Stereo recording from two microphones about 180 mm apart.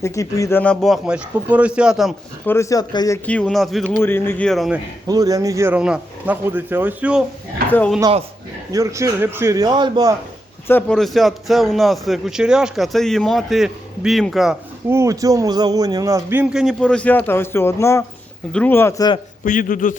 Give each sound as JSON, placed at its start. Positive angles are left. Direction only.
{"t": 0.0, "sound": "speech", "side_deg": 15}
{"t": 2.5, "sound": "speech", "side_deg": 15}
{"t": 3.2, "sound": "speech", "side_deg": 5}
{"t": 4.0, "sound": "speech", "side_deg": 10}
{"t": 5.0, "sound": "speech", "side_deg": -20}
{"t": 7.7, "sound": "speech", "side_deg": 10}
{"t": 8.7, "sound": "a man's voice", "side_deg": -15}
{"t": 10.7, "sound": "speech", "side_deg": 10}
{"t": 14.8, "sound": "speech", "side_deg": -15}
{"t": 19.5, "sound": "speech", "side_deg": 50}